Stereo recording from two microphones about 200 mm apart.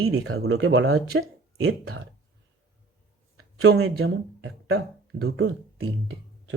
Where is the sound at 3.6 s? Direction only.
90° right.